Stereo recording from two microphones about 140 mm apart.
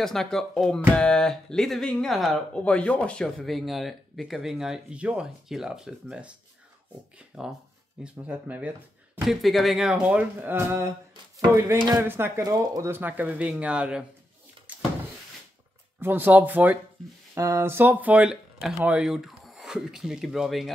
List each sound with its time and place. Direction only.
0.0 s speech: 5° left (ahead or behind); by 10.9 s 15° right (ahead or behind)
11.3 s a sound: 25° right (ahead or behind)
12.0 s speech: 15° right (ahead or behind)
16.0 s speech: 15° right (ahead or behind)